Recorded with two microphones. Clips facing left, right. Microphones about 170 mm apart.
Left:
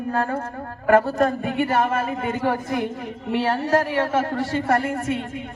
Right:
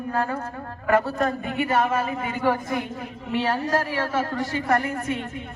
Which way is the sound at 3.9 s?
50° left (ahead or behind).